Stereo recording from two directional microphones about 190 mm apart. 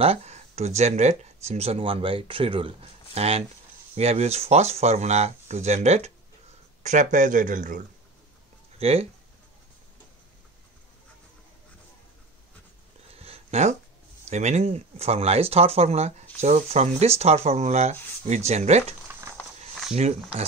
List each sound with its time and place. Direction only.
0.0 s speech: 35° right (ahead or behind)
8.7 s speech: 30° right (ahead or behind)
13.1 s a sound: 30° right (ahead or behind)
14.3 s speech: 35° right (ahead or behind)